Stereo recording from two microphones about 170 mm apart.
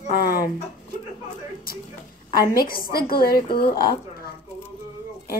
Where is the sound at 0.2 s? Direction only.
60° left (ahead or behind).